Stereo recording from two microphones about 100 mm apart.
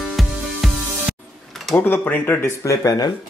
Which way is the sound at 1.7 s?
25° left (ahead or behind).